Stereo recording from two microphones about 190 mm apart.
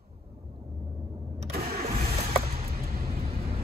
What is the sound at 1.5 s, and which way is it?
Engine starting, 55° right (ahead or behind).